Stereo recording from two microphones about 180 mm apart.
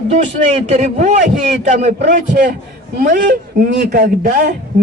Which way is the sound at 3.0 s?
50° right (ahead or behind).